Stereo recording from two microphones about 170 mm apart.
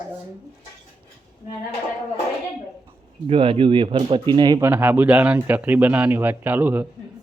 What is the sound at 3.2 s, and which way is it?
Speech, 30° right (ahead or behind).